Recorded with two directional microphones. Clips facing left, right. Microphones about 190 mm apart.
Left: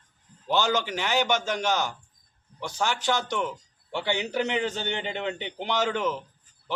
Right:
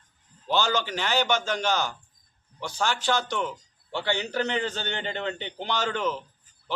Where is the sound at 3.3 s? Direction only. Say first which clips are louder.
Left 1 dB; 5° left (ahead or behind).